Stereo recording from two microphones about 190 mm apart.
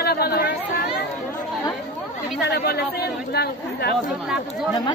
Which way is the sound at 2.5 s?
60° left (ahead or behind).